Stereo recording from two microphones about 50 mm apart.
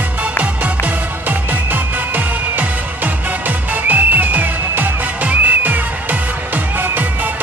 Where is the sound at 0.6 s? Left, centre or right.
Right.